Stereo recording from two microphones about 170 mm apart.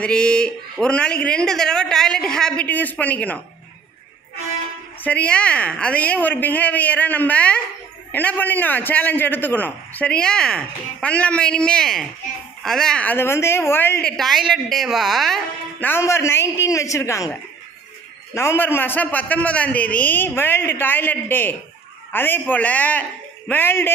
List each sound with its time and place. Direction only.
0.0 s speech: 5° left (ahead or behind)
5.0 s a man's voice: 10° left (ahead or behind)
15.9 s a man's voice: 15° left (ahead or behind)